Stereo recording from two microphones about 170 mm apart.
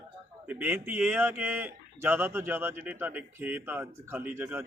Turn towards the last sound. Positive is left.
turn(degrees=-15)  # may be behind; listen again after turning